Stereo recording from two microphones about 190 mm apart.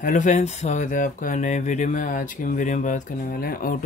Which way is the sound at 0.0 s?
40° left (ahead or behind).